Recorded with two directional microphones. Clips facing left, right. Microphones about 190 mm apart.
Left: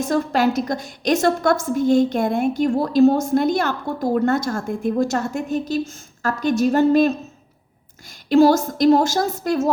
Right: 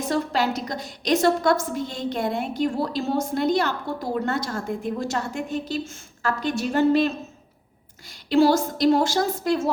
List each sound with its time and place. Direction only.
0.1 s a woman's voice: 50° left (ahead or behind)